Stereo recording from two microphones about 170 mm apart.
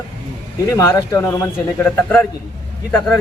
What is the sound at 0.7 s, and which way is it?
Speech, 15° left (ahead or behind).